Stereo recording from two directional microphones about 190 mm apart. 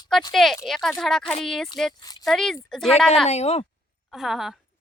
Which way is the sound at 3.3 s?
35° left (ahead or behind).